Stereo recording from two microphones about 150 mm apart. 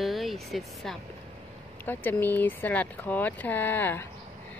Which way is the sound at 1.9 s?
10° left (ahead or behind).